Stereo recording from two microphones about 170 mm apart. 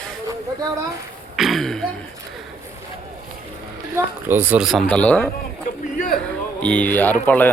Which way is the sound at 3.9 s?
10° right (ahead or behind).